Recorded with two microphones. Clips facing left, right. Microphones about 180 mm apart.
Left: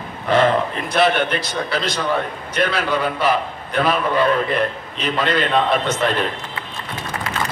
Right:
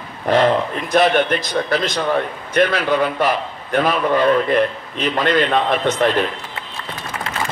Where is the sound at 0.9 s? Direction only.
45° right (ahead or behind).